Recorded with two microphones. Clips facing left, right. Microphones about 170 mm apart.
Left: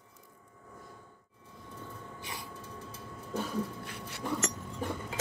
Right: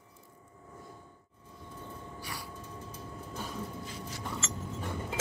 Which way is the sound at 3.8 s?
60° left (ahead or behind).